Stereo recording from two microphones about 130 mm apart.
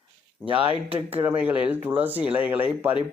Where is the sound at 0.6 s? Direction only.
45° right (ahead or behind).